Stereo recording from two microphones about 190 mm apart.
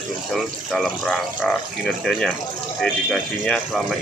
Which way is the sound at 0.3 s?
Centre (ahead or behind).